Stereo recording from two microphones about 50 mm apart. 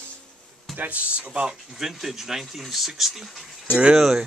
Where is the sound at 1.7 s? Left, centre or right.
Centre.